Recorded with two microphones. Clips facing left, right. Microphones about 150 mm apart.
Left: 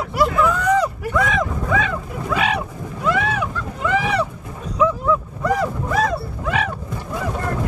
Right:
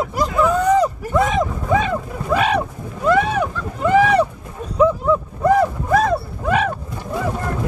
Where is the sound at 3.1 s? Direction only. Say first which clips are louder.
Right 5 dB; 40° right (ahead or behind).